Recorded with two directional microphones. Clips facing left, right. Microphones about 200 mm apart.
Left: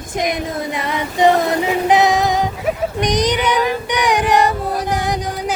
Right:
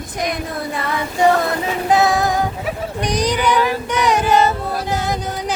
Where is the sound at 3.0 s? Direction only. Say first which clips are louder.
Even; 20° left (ahead or behind).